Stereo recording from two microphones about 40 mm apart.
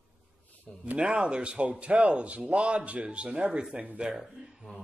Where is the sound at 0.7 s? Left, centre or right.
Centre.